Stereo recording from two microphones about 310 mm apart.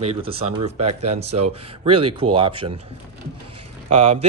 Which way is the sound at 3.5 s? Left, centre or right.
Centre.